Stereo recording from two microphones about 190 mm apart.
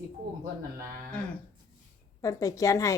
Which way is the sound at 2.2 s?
15° left (ahead or behind).